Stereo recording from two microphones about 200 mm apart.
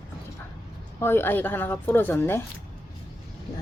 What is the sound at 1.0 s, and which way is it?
Speech, 10° left (ahead or behind).